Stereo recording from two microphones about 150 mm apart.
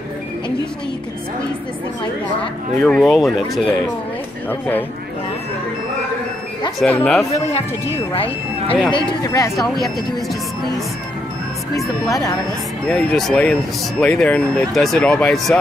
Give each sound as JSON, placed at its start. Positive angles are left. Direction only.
{"t": 2.8, "sound": "speech", "side_deg": 0}
{"t": 4.5, "sound": "speech", "side_deg": 10}
{"t": 6.8, "sound": "speech", "side_deg": 5}
{"t": 7.3, "sound": "speech", "side_deg": 45}
{"t": 8.9, "sound": "speech", "side_deg": 25}
{"t": 11.7, "sound": "speech", "side_deg": 25}
{"t": 12.8, "sound": "speech", "side_deg": 5}